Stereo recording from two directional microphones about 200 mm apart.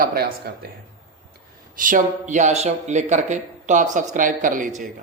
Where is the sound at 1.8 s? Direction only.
40° right (ahead or behind).